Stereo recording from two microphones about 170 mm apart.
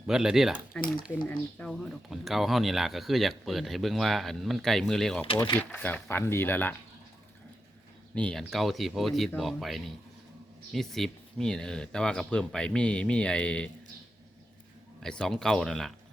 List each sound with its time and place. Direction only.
0.1 s speech: 5° right (ahead or behind)
5.2 s speech: 30° left (ahead or behind)
5.5 s speech: 10° left (ahead or behind)
8.1 s speech: 5° left (ahead or behind)
15.0 s speech: 5° left (ahead or behind)